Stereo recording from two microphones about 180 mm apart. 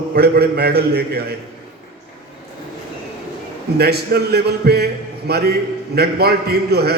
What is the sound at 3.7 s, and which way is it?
A man's voice, 60° right (ahead or behind).